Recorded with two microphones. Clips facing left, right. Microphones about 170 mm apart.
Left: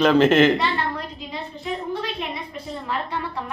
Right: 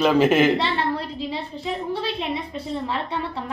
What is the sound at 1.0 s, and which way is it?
A woman's voice, 30° right (ahead or behind).